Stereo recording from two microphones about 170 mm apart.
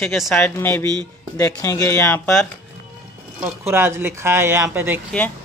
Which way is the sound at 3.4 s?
15° right (ahead or behind).